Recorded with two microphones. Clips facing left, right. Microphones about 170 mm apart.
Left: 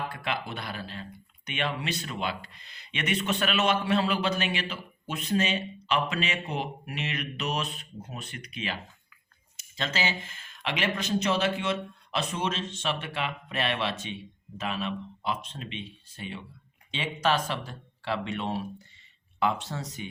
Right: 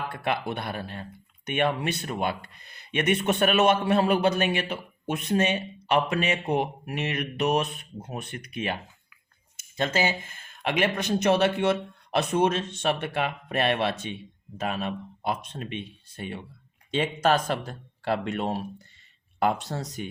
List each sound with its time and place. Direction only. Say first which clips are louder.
0.1 s speech: right 5 dB; 60° right (ahead or behind); by 20.1 s 40° right (ahead or behind)